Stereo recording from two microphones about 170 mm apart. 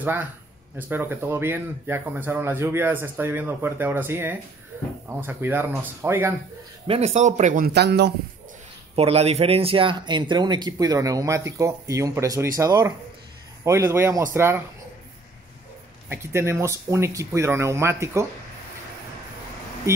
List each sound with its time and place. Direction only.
0.0 s speech: 10° right (ahead or behind)
6.9 s speech: 40° right (ahead or behind); by 8.1 s 75° right (ahead or behind)
8.9 s speech: 35° right (ahead or behind); by 14.6 s 15° right (ahead or behind)
16.1 s speech: 15° right (ahead or behind)